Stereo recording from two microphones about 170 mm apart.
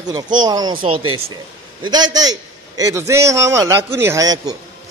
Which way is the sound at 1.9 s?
25° right (ahead or behind).